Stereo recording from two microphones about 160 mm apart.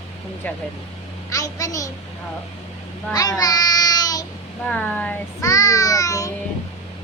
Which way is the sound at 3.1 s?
20° left (ahead or behind).